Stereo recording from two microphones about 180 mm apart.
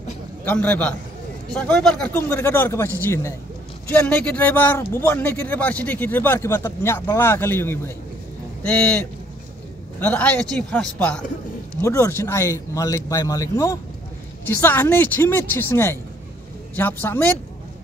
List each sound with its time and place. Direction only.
0.5 s speech: 10° left (ahead or behind)